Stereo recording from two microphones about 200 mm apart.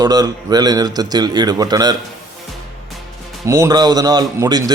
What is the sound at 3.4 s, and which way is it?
A man's voice, 15° right (ahead or behind).